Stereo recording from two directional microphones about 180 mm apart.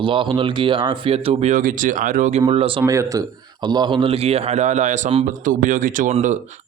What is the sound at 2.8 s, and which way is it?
Speech, 15° right (ahead or behind).